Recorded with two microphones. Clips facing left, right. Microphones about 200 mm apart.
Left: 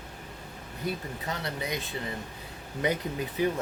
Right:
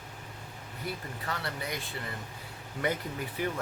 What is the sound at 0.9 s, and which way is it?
Speech, 20° left (ahead or behind).